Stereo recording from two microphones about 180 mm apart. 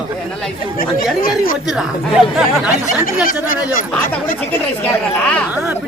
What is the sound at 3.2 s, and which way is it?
Speech, 50° left (ahead or behind).